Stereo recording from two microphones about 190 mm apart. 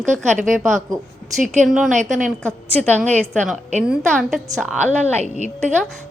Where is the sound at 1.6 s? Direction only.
5° right (ahead or behind).